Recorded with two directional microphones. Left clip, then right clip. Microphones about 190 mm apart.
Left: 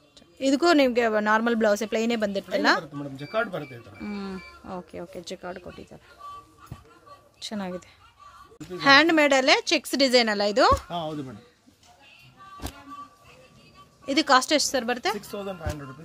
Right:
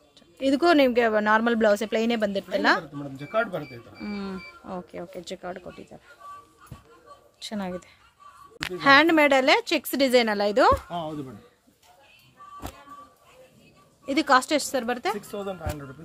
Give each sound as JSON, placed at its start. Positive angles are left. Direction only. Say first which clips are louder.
{"t": 0.4, "sound": "speech", "louder": "right 1 dB", "side_deg": 0}
{"t": 7.3, "sound": "speech", "louder": "even", "side_deg": 0}
{"t": 10.9, "sound": "speech", "louder": "left 1 dB", "side_deg": 20}
{"t": 14.0, "sound": "speech", "louder": "even", "side_deg": 0}